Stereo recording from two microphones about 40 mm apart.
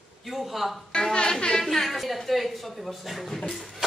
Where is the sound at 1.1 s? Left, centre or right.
Left.